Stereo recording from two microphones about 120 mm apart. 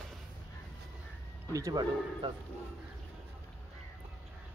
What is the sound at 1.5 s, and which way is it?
Speech, 30° right (ahead or behind).